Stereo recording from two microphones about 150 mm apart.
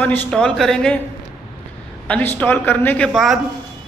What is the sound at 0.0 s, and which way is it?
Speech, 15° left (ahead or behind).